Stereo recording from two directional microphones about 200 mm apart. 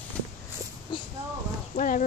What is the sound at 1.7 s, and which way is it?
Speech, 40° left (ahead or behind).